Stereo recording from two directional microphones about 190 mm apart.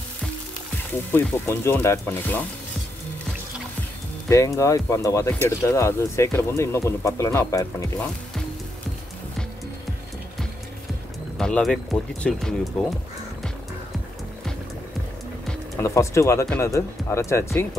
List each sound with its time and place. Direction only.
1.1 s speech: 10° left (ahead or behind)
4.3 s speech: 15° left (ahead or behind)
11.3 s speech: 5° left (ahead or behind)
15.8 s speech: 15° left (ahead or behind)